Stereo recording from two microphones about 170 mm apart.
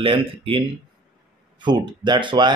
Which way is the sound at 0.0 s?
30° right (ahead or behind).